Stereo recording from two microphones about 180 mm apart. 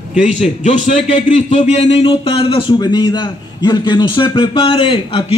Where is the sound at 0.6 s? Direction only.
40° left (ahead or behind).